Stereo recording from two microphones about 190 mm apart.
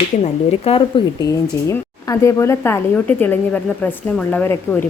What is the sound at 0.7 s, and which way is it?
A woman's voice, 25° left (ahead or behind).